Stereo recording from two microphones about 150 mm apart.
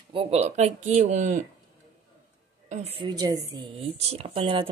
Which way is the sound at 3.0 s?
25° right (ahead or behind).